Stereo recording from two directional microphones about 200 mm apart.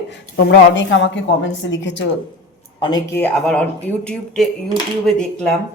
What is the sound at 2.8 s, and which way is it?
Speech, 15° left (ahead or behind).